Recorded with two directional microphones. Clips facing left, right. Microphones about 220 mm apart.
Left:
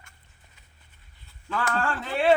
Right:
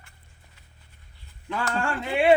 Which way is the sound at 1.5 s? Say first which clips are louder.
Even; 10° right (ahead or behind).